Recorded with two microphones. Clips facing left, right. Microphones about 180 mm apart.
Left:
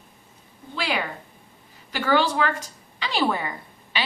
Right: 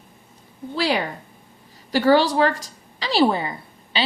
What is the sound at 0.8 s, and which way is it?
A woman's voice, 35° right (ahead or behind).